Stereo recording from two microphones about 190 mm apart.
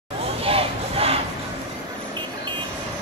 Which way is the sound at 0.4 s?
30° right (ahead or behind).